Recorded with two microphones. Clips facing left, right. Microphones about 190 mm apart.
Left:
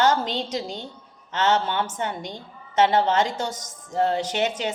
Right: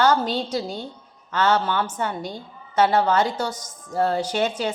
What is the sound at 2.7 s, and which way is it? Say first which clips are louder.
A woman's voice: right 1 dB; 25° left (ahead or behind).